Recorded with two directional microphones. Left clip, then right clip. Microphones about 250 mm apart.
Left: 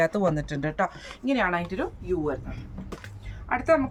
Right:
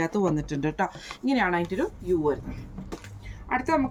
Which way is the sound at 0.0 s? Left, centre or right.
Left.